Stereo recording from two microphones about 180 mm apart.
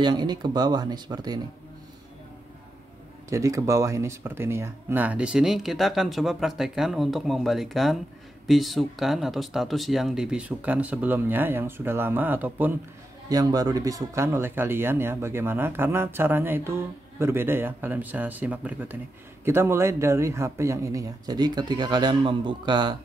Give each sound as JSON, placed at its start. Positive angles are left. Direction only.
{"t": 0.0, "sound": "speech", "side_deg": -25}
{"t": 3.3, "sound": "speech", "side_deg": -15}
{"t": 13.3, "sound": "speech", "side_deg": -20}